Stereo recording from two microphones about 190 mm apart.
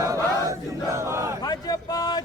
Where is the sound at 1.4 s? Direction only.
20° left (ahead or behind).